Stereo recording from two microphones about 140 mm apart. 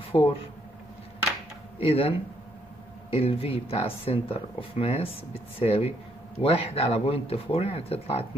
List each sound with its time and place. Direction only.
0.1 s speech: 25° left (ahead or behind)
1.8 s speech: 45° left (ahead or behind)